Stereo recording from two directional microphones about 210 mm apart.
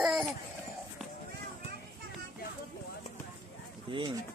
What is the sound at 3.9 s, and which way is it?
Speech, 25° right (ahead or behind).